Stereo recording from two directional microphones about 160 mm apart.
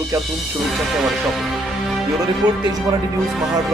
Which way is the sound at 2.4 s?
25° right (ahead or behind).